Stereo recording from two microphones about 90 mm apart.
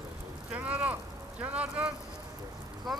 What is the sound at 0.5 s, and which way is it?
Speech, 15° right (ahead or behind).